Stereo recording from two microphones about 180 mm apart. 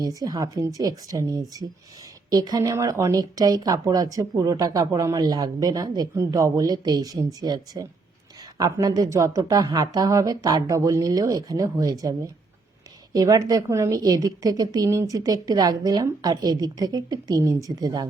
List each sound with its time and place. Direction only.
0.0 s speech: 20° right (ahead or behind)